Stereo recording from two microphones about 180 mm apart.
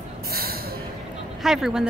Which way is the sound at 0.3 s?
55° right (ahead or behind).